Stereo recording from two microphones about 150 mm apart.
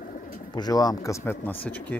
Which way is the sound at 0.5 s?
25° left (ahead or behind).